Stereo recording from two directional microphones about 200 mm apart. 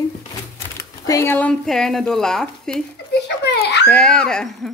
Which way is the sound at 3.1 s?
55° left (ahead or behind).